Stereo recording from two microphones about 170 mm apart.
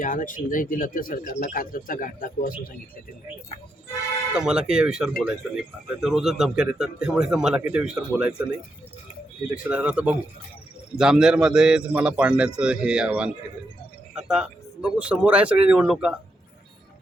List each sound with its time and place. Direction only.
0.0 s speech: 50° left (ahead or behind)
4.4 s a man's voice: 5° right (ahead or behind)
9.6 s a man's voice: 5° right (ahead or behind)